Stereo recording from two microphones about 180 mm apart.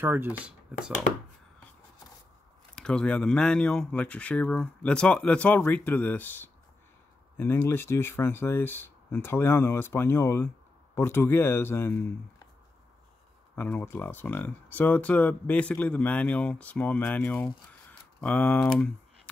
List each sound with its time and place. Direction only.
0.0 s speech: 10° right (ahead or behind)
2.7 s speech: 5° left (ahead or behind)
13.6 s speech: 10° left (ahead or behind)